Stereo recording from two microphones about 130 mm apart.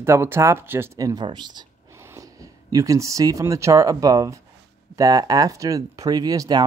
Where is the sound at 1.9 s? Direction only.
20° right (ahead or behind).